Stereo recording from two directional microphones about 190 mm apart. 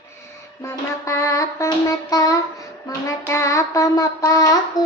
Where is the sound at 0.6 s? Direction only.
15° left (ahead or behind).